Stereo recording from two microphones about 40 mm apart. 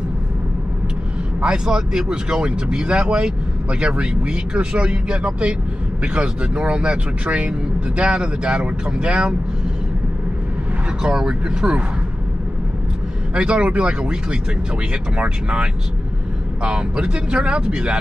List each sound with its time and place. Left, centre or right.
1.4 s speech: right
11.0 s speech: centre
13.3 s speech: right